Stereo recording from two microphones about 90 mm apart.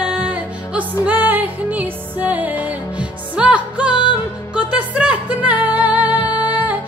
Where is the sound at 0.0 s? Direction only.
15° right (ahead or behind).